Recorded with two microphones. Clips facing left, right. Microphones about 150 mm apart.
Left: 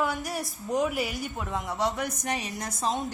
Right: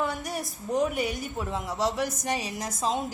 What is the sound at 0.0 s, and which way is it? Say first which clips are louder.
A woman's voice: left 1 dB; centre (ahead or behind).